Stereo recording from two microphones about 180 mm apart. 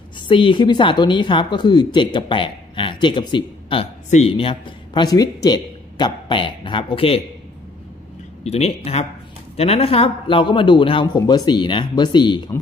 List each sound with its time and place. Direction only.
0.3 s speech: 25° left (ahead or behind)
8.5 s speech: 35° left (ahead or behind)